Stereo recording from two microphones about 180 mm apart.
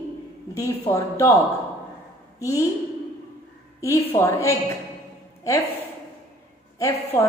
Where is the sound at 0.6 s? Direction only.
15° left (ahead or behind).